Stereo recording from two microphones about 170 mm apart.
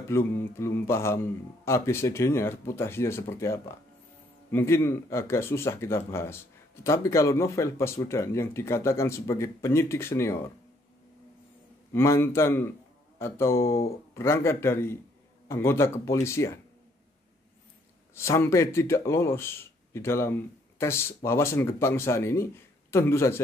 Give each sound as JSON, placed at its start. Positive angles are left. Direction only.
{"t": 0.1, "sound": "speech", "side_deg": 15}
{"t": 11.9, "sound": "speech", "side_deg": 15}
{"t": 18.1, "sound": "speech", "side_deg": 15}